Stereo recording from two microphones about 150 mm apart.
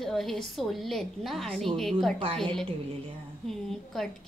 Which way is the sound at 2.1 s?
40° right (ahead or behind).